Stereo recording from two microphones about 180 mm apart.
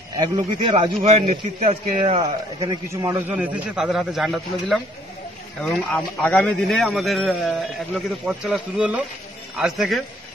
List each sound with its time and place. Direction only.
0.2 s a man's voice: 25° right (ahead or behind); by 10.0 s centre (ahead or behind)